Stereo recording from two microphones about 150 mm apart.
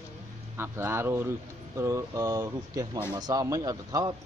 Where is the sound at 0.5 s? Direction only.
15° right (ahead or behind).